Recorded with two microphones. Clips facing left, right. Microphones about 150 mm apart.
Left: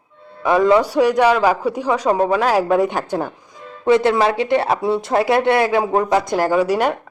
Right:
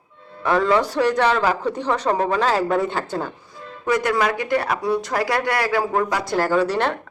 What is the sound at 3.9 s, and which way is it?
Speech, 25° left (ahead or behind).